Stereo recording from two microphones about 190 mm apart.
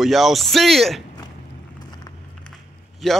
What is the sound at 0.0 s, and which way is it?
Speech, centre (ahead or behind).